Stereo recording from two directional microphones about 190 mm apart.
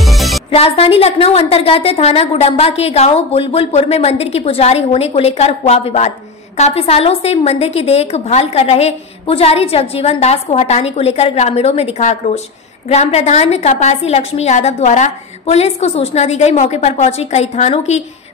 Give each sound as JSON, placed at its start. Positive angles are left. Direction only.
{"t": 0.0, "sound": "music", "side_deg": 0}
{"t": 0.5, "sound": "a woman's voice", "side_deg": 30}